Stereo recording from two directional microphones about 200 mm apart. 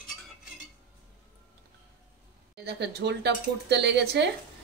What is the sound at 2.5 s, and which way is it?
Speech, 55° right (ahead or behind).